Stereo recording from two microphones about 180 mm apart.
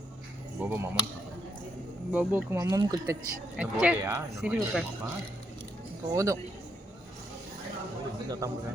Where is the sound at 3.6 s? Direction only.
5° right (ahead or behind).